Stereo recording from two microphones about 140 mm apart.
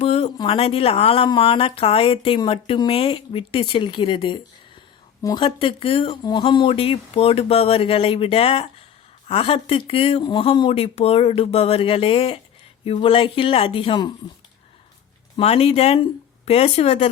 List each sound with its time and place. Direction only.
0.0 s a sound: 45° left (ahead or behind)
0.3 s speech: 40° left (ahead or behind)
15.4 s speech: 45° left (ahead or behind)